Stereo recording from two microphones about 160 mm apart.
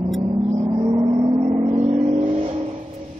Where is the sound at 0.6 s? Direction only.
20° right (ahead or behind).